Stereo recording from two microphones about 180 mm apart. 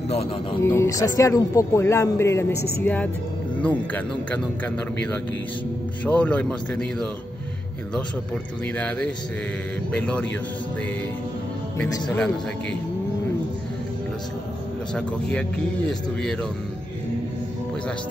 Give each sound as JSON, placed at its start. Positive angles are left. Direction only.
{"t": 0.1, "sound": "speech", "side_deg": 35}
{"t": 0.7, "sound": "a man's voice", "side_deg": 15}
{"t": 8.7, "sound": "a man's voice", "side_deg": 5}
{"t": 15.0, "sound": "speech", "side_deg": 5}